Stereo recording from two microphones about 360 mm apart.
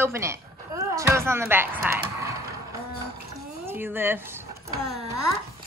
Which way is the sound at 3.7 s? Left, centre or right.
Centre.